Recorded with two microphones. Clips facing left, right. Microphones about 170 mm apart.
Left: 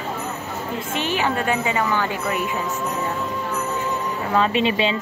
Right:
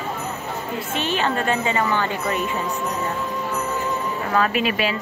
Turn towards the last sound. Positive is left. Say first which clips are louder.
# left 2 dB
turn(degrees=25)  # may be behind; listen again after turning